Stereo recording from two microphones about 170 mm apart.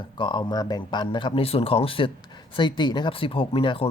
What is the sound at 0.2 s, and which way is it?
Speech, 30° left (ahead or behind).